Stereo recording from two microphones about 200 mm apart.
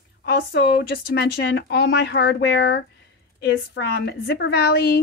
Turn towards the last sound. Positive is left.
turn(degrees=50)  # may be behind; listen again after turning